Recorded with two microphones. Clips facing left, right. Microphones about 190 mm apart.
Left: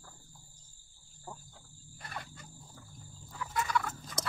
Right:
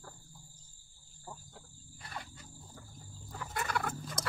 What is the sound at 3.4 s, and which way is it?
Turkey, 60° right (ahead or behind).